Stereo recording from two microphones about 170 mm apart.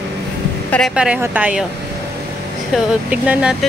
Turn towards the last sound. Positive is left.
turn(degrees=-5)  # may be behind; listen again after turning